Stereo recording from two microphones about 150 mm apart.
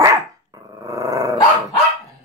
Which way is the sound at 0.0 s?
20° right (ahead or behind).